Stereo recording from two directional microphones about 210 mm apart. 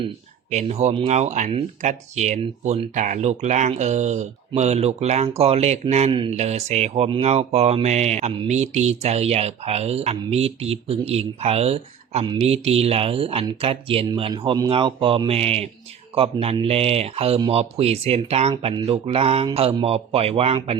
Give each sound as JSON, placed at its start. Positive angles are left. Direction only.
{"t": 0.5, "sound": "speech", "side_deg": -30}